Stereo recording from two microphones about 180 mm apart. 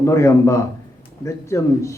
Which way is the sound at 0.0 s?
15° left (ahead or behind).